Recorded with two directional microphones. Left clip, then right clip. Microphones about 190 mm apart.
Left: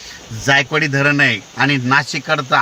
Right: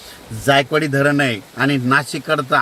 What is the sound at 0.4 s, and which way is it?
Speech, 10° left (ahead or behind).